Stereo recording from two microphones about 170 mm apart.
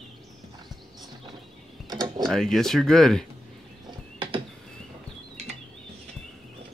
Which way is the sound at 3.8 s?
30° right (ahead or behind).